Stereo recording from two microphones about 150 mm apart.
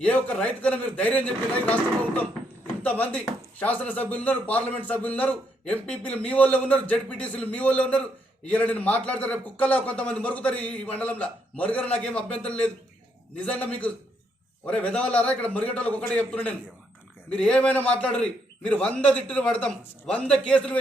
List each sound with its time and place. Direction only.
0.0 s speech: 10° left (ahead or behind)
2.8 s speech: 10° left (ahead or behind)